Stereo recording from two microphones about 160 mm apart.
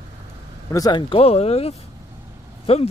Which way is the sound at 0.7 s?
25° left (ahead or behind).